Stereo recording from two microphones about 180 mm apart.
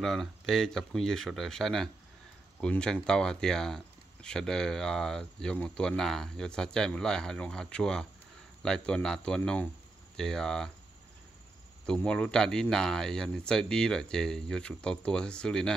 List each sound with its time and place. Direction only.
0.0 s speech: centre (ahead or behind)
11.8 s speech: 5° left (ahead or behind)